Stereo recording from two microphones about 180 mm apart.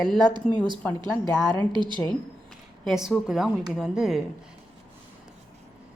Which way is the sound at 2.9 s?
Centre (ahead or behind).